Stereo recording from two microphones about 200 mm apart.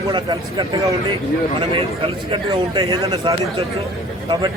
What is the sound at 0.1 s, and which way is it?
A man's voice, 20° right (ahead or behind).